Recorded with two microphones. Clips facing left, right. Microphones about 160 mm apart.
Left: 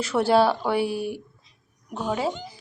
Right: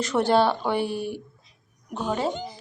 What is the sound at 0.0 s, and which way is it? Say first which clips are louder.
Speech: left 1 dB; 5° left (ahead or behind).